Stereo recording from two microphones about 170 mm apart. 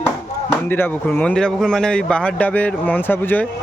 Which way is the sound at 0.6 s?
10° left (ahead or behind).